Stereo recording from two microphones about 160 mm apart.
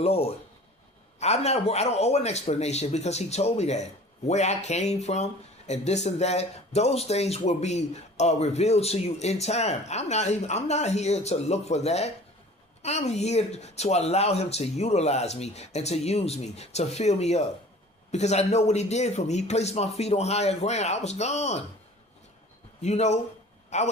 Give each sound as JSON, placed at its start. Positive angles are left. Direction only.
{"t": 0.0, "sound": "speech", "side_deg": 40}
{"t": 22.8, "sound": "speech", "side_deg": 45}
{"t": 23.6, "sound": "a sound", "side_deg": 45}